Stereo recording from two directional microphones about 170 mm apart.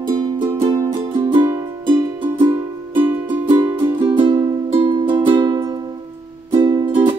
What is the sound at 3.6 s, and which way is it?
Music, 30° right (ahead or behind).